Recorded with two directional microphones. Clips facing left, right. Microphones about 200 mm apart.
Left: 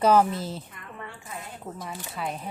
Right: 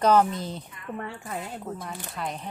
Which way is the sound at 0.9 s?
55° right (ahead or behind).